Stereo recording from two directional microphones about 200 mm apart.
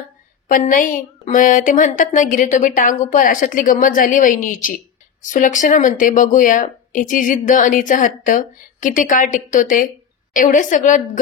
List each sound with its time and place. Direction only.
0.5 s a woman's voice: 40° left (ahead or behind)